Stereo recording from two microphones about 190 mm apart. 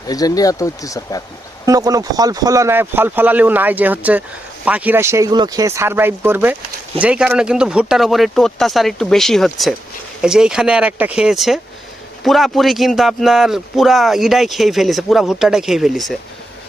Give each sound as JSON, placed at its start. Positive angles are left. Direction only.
{"t": 0.1, "sound": "speech", "side_deg": 20}
{"t": 1.6, "sound": "a man's voice", "side_deg": -20}